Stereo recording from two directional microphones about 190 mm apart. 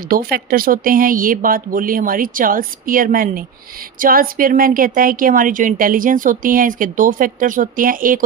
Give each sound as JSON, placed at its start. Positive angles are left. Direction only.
{"t": 0.1, "sound": "a woman's voice", "side_deg": -50}